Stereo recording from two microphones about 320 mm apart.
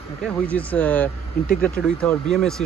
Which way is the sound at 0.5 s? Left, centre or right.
Centre.